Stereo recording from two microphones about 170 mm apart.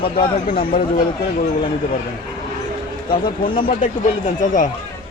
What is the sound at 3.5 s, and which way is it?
Speech, 50° left (ahead or behind).